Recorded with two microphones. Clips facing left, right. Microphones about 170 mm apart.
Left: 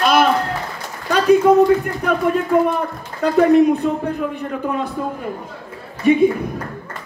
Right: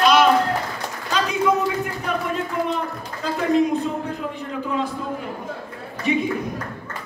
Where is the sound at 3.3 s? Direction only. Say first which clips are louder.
Left 7 dB; 60° left (ahead or behind).